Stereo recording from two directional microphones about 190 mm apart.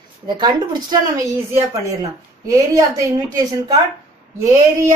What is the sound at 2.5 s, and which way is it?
A woman's voice, 15° right (ahead or behind).